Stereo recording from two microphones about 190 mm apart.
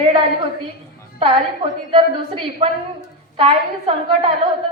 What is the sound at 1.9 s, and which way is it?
A woman's voice, 25° right (ahead or behind).